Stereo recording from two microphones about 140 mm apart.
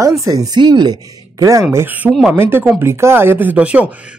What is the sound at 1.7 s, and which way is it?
Speech, 10° right (ahead or behind).